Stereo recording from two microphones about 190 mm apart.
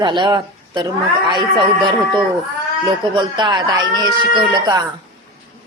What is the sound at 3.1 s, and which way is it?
A woman's voice, 25° right (ahead or behind).